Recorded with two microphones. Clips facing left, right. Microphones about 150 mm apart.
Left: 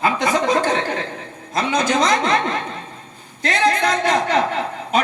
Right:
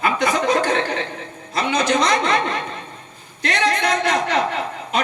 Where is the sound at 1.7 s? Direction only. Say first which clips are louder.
Even; 45° left (ahead or behind).